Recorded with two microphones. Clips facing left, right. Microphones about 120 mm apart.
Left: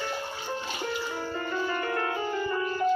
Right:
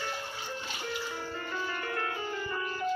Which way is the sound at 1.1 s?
50° left (ahead or behind).